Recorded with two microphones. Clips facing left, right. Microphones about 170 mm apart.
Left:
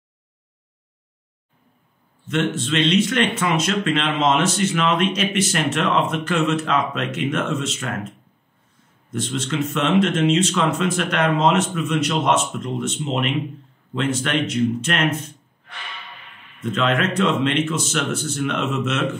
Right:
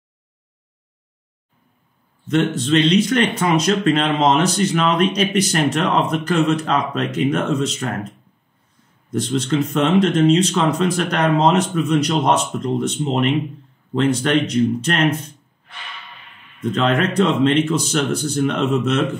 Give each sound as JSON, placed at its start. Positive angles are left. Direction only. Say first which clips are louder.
{"t": 2.2, "sound": "speech", "louder": "right 4 dB", "side_deg": -40}
{"t": 9.1, "sound": "speech", "louder": "right 5 dB", "side_deg": -35}
{"t": 16.7, "sound": "speech", "louder": "right 3 dB", "side_deg": -35}